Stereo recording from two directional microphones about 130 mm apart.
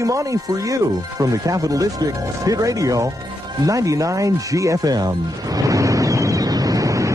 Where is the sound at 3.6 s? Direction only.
25° right (ahead or behind).